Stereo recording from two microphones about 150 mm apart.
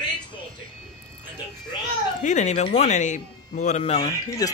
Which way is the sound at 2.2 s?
50° left (ahead or behind).